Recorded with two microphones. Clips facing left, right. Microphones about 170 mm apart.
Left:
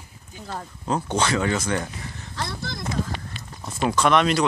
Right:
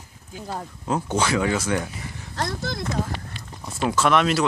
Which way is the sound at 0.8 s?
5° right (ahead or behind).